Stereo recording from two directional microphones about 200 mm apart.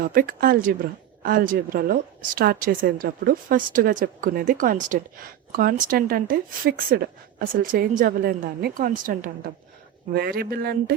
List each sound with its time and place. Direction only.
0.0 s a woman's voice: 45° right (ahead or behind)
10.2 s a woman's voice: 50° right (ahead or behind)